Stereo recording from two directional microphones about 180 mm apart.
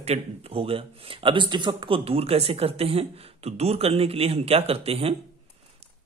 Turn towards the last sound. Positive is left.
turn(degrees=-35)  # may be behind; listen again after turning